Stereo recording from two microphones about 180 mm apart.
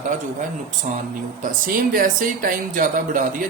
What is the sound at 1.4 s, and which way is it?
Speech, 50° right (ahead or behind).